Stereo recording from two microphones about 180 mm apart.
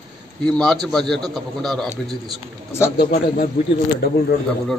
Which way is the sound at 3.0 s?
60° left (ahead or behind).